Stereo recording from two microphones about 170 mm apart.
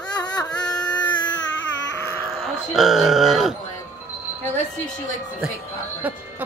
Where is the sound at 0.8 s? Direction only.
10° left (ahead or behind).